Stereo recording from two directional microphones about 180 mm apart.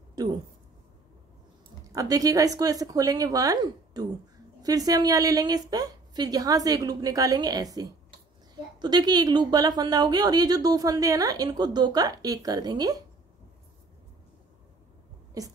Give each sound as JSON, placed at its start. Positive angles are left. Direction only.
{"t": 1.9, "sound": "speech", "side_deg": -20}
{"t": 15.4, "sound": "speech", "side_deg": -20}